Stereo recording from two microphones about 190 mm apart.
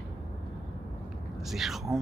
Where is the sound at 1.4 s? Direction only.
Centre (ahead or behind).